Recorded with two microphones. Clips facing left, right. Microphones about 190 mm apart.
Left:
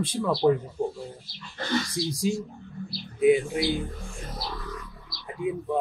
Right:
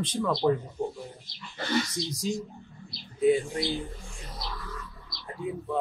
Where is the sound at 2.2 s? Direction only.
10° left (ahead or behind).